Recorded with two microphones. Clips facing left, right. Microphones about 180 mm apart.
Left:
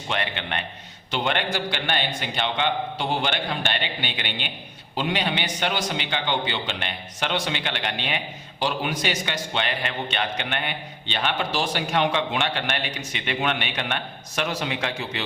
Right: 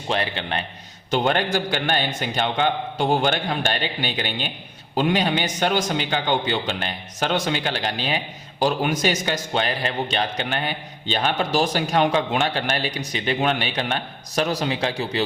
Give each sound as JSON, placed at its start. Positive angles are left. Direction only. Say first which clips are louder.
{"t": 0.1, "sound": "a man's voice", "louder": "right 4 dB", "side_deg": -35}